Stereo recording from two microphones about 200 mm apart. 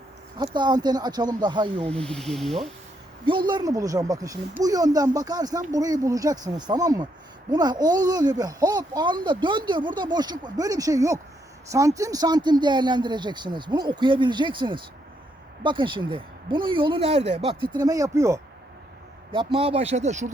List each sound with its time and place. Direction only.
0.3 s speech: 20° right (ahead or behind)
1.9 s speech: 5° left (ahead or behind)
3.2 s speech: 20° right (ahead or behind)
19.3 s speech: 25° right (ahead or behind)